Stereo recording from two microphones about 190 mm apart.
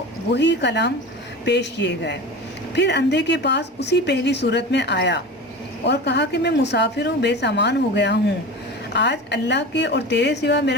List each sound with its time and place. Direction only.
0.3 s speech: 65° left (ahead or behind)